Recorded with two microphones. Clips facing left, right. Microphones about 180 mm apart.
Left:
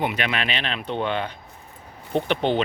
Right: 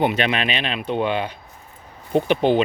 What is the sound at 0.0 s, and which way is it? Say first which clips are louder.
Speech: right 5 dB; 25° right (ahead or behind).